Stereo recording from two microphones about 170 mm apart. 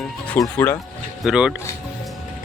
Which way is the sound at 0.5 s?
10° left (ahead or behind).